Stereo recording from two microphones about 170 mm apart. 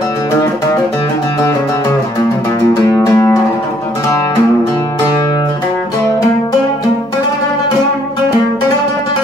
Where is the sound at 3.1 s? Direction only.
20° left (ahead or behind).